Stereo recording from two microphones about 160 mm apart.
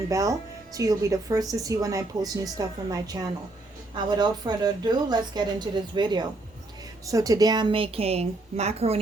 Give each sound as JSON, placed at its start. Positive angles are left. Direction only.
{"t": 0.1, "sound": "a woman's voice", "side_deg": -20}